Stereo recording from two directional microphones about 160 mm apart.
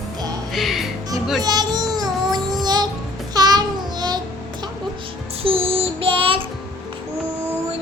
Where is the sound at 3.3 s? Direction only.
25° right (ahead or behind).